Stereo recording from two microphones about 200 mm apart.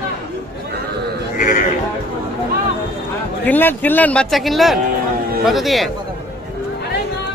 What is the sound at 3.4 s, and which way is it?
Speech, 10° left (ahead or behind).